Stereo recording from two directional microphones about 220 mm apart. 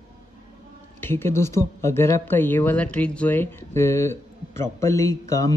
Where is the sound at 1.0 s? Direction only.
10° left (ahead or behind).